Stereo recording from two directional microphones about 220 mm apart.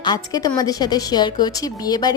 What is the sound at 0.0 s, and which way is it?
A woman's voice, 20° left (ahead or behind).